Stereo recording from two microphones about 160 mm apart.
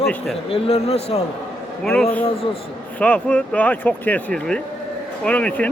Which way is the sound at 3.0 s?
10° left (ahead or behind).